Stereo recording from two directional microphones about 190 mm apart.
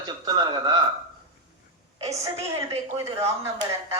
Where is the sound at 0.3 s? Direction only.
20° right (ahead or behind).